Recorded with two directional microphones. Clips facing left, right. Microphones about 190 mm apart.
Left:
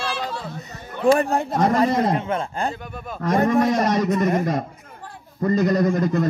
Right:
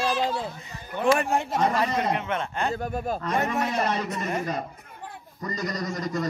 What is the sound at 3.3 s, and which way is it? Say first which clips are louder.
Speech: left 10 dB; 35° left (ahead or behind).